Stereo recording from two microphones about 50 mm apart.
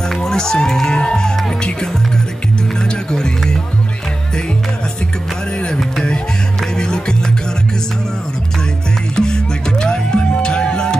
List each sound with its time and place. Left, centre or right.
0.1 s speech: centre
2.8 s music: centre
5.6 s music: centre
9.1 s music: centre